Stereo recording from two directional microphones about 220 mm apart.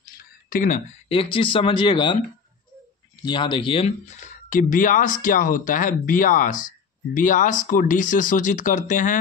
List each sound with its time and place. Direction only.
0.2 s speech: 40° left (ahead or behind); by 2.1 s 20° left (ahead or behind)
3.3 s speech: 20° left (ahead or behind)